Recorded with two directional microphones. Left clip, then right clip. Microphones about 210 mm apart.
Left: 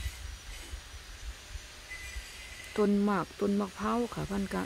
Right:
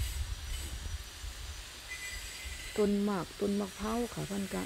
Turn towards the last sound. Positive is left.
turn(degrees=20)  # may be behind; listen again after turning